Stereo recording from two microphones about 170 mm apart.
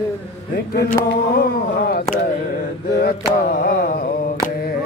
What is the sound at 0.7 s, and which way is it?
Mantra, 60° left (ahead or behind).